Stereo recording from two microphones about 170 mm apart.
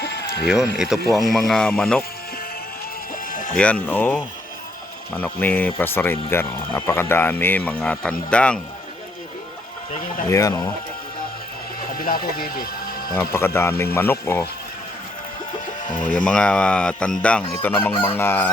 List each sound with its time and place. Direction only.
0.0 s sheep: 75° left (ahead or behind)
0.4 s speech: 5° right (ahead or behind)
3.2 s music: 55° left (ahead or behind)
3.5 s speech: 5° left (ahead or behind)
10.2 s speech: 20° left (ahead or behind)
11.9 s speech: 55° left (ahead or behind)
13.1 s speech: 15° left (ahead or behind)
15.6 s music: 50° left (ahead or behind)
16.1 s speech: 5° left (ahead or behind)